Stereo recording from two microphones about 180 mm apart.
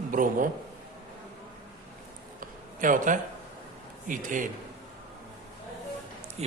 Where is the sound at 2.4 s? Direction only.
50° right (ahead or behind).